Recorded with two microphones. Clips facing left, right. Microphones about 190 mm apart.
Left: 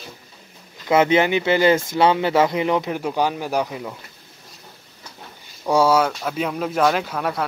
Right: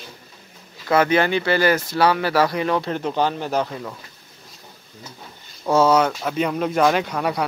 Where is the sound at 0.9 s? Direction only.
20° left (ahead or behind).